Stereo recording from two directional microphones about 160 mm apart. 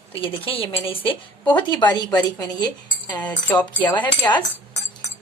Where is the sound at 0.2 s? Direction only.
35° left (ahead or behind).